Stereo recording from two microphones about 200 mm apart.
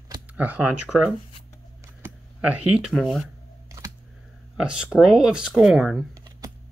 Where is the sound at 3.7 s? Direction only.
15° right (ahead or behind).